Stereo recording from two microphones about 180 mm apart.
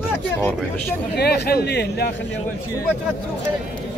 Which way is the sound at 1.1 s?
60° left (ahead or behind).